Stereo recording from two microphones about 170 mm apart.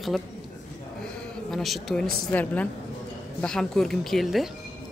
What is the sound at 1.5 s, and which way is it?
A woman's voice, centre (ahead or behind).